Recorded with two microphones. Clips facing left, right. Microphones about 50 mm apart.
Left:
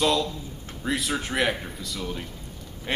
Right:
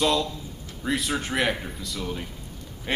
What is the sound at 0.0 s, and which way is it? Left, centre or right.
A man's voice, centre.